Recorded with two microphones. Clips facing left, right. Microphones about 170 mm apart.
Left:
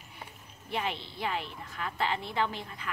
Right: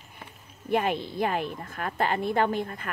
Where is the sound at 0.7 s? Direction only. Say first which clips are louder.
Right 9 dB; 50° right (ahead or behind).